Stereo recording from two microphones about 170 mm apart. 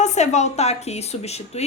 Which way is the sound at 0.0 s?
45° left (ahead or behind).